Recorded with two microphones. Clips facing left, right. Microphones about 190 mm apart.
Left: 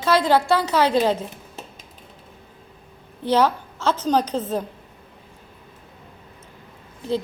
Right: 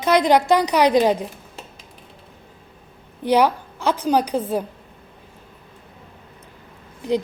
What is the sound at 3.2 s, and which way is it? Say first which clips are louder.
A woman's voice: right 2 dB; 15° right (ahead or behind).